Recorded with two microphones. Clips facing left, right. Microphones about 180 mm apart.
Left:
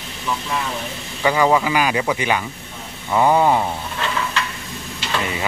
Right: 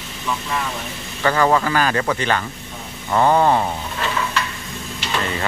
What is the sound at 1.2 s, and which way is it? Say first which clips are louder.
Speech: left 1 dB; 10° left (ahead or behind).